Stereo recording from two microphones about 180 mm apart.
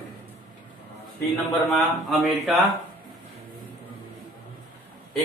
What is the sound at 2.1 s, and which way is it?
Speech, centre (ahead or behind).